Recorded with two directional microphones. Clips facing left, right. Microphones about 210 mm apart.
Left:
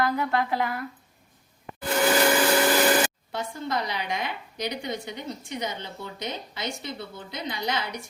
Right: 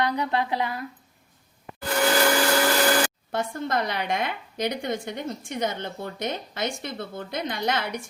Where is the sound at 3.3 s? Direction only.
50° right (ahead or behind).